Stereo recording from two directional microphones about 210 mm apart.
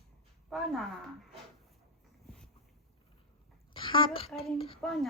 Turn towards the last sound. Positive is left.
turn(degrees=0)  # may be behind; listen again after turning